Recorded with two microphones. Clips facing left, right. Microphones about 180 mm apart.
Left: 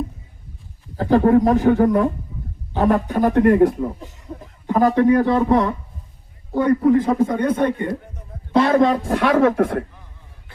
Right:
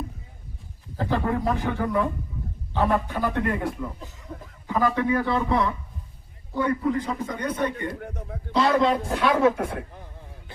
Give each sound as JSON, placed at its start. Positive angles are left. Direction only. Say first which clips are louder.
{"t": 0.9, "sound": "a man's voice", "louder": "left 11 dB", "side_deg": 45}
{"t": 8.0, "sound": "music", "louder": "right 5 dB", "side_deg": -75}
{"t": 8.5, "sound": "a man's voice", "louder": "left 5 dB", "side_deg": 55}
{"t": 9.3, "sound": "speech", "louder": "left 6 dB", "side_deg": 65}